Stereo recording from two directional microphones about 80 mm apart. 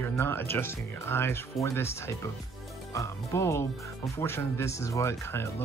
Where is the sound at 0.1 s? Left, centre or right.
Left.